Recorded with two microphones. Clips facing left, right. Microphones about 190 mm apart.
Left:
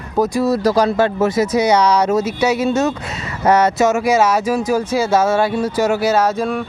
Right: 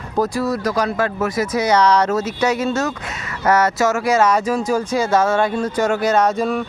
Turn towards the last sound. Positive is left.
turn(degrees=0)  # may be behind; listen again after turning